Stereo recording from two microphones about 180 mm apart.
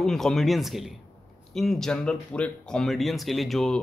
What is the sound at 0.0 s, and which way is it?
Speech, centre (ahead or behind).